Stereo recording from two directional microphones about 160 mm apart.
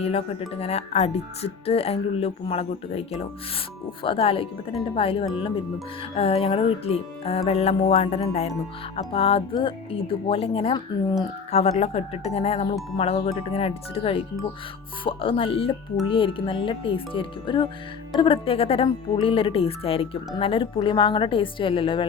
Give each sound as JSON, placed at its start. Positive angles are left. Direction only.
{"t": 0.0, "sound": "speech", "side_deg": 40}